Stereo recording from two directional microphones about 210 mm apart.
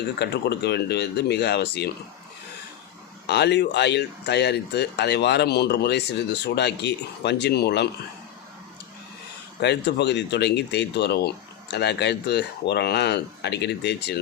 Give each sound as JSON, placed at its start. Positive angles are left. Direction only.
{"t": 0.2, "sound": "speech", "side_deg": 50}
{"t": 3.2, "sound": "speech", "side_deg": 55}
{"t": 9.6, "sound": "speech", "side_deg": 55}